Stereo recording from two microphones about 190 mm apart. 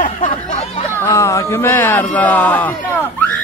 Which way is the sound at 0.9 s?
15° left (ahead or behind).